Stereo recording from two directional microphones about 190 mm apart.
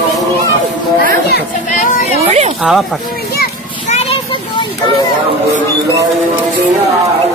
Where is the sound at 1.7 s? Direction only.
40° left (ahead or behind).